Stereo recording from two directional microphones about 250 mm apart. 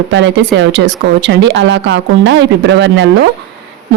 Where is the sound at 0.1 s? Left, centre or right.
Right.